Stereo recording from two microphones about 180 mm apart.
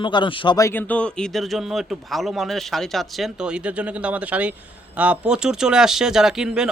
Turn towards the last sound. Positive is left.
turn(degrees=-5)  # may be behind; listen again after turning